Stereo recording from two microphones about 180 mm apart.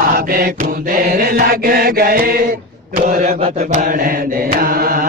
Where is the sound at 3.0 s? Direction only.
45° right (ahead or behind).